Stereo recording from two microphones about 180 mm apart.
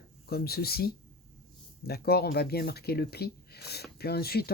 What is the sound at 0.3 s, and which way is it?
Speech, 60° left (ahead or behind).